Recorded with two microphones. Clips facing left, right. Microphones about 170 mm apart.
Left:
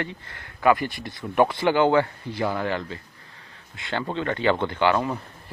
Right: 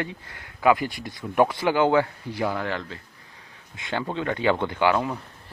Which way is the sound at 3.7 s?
15° right (ahead or behind).